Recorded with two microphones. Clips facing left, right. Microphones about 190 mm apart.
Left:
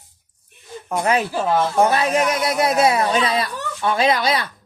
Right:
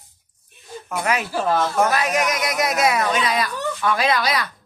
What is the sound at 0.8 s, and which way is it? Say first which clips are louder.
Speech: left 4 dB; 30° left (ahead or behind).